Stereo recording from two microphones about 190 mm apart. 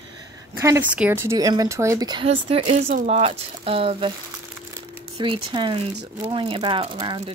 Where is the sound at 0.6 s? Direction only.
10° right (ahead or behind); by 4.1 s 30° right (ahead or behind).